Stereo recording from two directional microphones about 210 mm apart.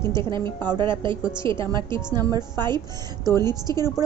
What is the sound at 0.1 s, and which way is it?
A woman's voice, 20° right (ahead or behind).